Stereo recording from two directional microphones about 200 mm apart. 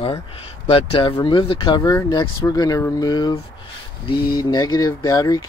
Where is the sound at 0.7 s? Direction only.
25° left (ahead or behind).